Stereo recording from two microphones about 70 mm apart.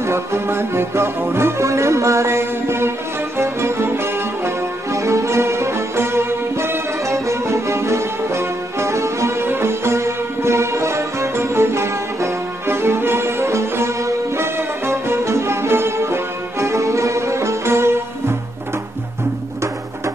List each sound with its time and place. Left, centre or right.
0.0 s music: right